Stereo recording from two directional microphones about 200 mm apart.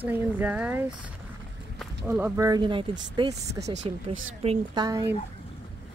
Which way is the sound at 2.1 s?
15° right (ahead or behind).